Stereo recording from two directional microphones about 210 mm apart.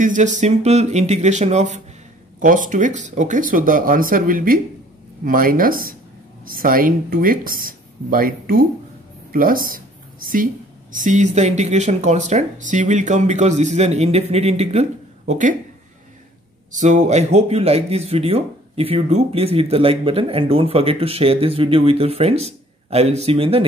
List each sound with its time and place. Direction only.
0.0 s speech: 35° right (ahead or behind)
16.7 s speech: 35° right (ahead or behind)